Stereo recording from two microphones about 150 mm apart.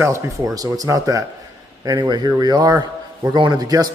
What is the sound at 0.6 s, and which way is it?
A man's voice, 25° right (ahead or behind).